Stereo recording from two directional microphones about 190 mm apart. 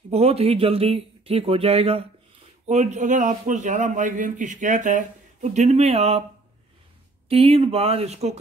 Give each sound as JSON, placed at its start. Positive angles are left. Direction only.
{"t": 0.1, "sound": "a man's voice", "side_deg": -30}
{"t": 7.2, "sound": "a man's voice", "side_deg": -30}